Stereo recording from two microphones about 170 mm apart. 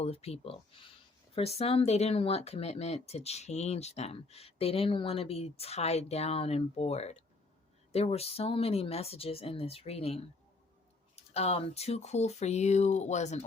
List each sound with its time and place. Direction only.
0.0 s speech: 35° left (ahead or behind)